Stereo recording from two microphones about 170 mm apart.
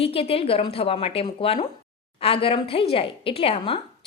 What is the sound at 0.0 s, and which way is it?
A woman's voice, 35° left (ahead or behind).